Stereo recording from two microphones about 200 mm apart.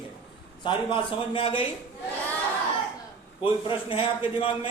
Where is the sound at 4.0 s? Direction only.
30° left (ahead or behind).